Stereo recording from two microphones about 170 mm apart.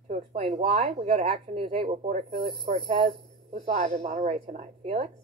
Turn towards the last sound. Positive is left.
turn(degrees=-40)  # may be behind; listen again after turning